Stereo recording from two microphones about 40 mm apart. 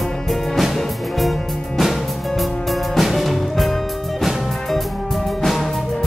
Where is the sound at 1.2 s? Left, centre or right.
Centre.